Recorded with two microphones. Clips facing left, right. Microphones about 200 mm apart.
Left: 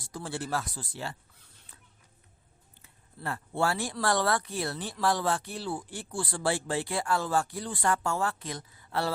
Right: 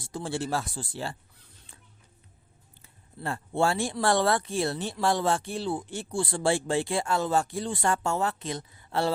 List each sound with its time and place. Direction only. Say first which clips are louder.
0.0 s speech: right 4 dB; 25° right (ahead or behind)
2.8 s speech: right 3 dB; 25° right (ahead or behind)